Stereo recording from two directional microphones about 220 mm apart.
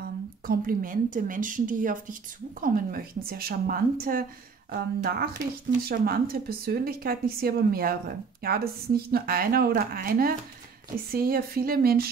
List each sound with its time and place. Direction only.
0.0 s a woman's voice: 40° right (ahead or behind)